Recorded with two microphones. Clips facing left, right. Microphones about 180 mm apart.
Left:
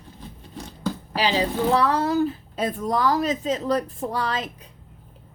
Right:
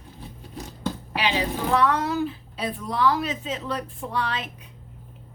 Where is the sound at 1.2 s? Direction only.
35° left (ahead or behind).